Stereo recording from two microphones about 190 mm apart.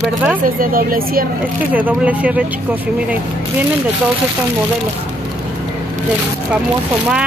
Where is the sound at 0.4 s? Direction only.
50° right (ahead or behind).